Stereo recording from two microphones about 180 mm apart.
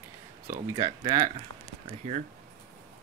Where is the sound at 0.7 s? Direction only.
25° right (ahead or behind).